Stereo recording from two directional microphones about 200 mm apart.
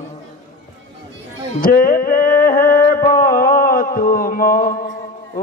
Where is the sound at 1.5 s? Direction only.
45° left (ahead or behind).